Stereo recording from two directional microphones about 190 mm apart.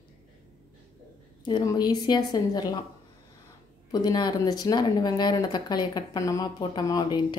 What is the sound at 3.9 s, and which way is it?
Speech, 20° left (ahead or behind).